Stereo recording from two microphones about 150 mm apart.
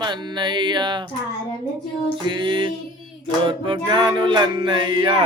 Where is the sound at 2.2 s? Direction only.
35° right (ahead or behind).